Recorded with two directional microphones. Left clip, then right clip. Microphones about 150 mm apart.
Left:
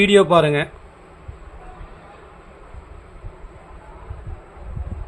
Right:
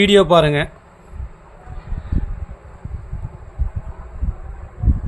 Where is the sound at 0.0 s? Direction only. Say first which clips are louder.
Right 2 dB; 35° right (ahead or behind).